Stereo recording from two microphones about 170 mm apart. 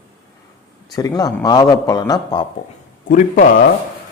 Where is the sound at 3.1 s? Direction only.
50° left (ahead or behind).